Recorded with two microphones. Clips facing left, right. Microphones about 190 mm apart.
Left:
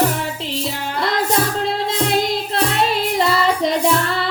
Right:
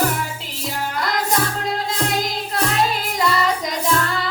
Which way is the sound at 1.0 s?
30° left (ahead or behind).